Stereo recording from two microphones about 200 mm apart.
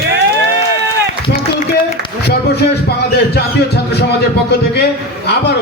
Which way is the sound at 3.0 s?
55° left (ahead or behind).